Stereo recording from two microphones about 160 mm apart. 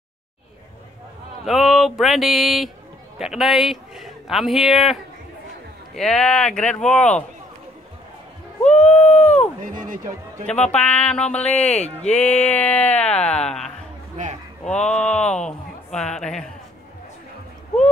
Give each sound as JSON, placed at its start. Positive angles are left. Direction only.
{"t": 1.4, "sound": "speech", "side_deg": 0}
{"t": 5.9, "sound": "speech", "side_deg": 5}
{"t": 8.6, "sound": "a sound", "side_deg": 50}
{"t": 8.9, "sound": "a sound", "side_deg": 10}
{"t": 10.7, "sound": "speech", "side_deg": 5}
{"t": 11.4, "sound": "speech", "side_deg": 45}
{"t": 12.2, "sound": "speech", "side_deg": 10}
{"t": 14.2, "sound": "a man's voice", "side_deg": -50}
{"t": 15.0, "sound": "speech", "side_deg": 5}